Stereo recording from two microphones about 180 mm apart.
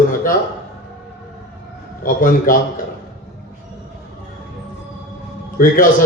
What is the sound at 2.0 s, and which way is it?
Speech, 50° left (ahead or behind).